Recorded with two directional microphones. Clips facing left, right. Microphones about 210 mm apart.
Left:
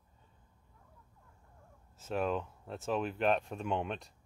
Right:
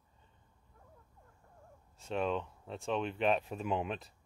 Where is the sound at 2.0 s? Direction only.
5° left (ahead or behind).